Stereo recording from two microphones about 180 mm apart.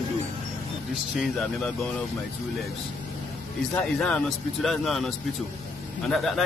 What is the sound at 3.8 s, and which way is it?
A man's voice, 5° left (ahead or behind).